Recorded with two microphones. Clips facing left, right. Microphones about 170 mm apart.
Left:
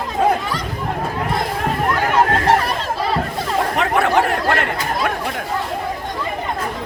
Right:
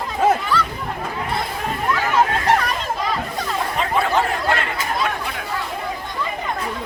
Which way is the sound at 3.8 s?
70° left (ahead or behind).